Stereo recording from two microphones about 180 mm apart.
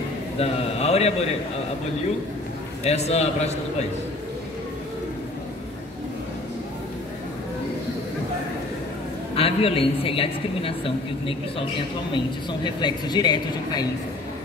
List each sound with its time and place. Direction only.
0.4 s a woman's voice: 35° left (ahead or behind)
2.8 s a woman's voice: 35° left (ahead or behind)
9.3 s a woman's voice: 30° left (ahead or behind)
12.6 s speech: 25° left (ahead or behind)